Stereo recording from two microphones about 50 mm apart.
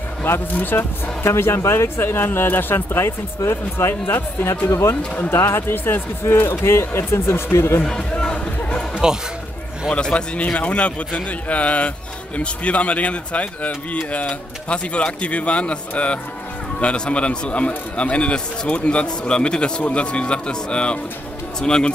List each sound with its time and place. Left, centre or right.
0.2 s speech: left
1.2 s speech: left
4.6 s speech: left
5.3 s speech: left
7.8 s music: centre
9.0 s speech: centre
9.8 s speech: centre
10.1 s a man's voice: left